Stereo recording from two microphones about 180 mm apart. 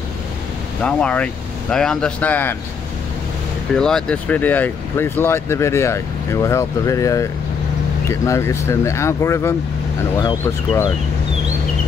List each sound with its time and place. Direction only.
0.8 s speech: 5° left (ahead or behind)
3.7 s speech: 5° left (ahead or behind)